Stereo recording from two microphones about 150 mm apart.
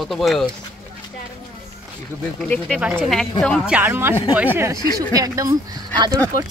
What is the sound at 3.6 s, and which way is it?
A woman's voice, 10° right (ahead or behind).